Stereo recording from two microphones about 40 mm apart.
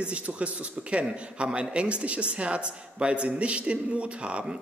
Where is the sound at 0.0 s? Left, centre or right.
Right.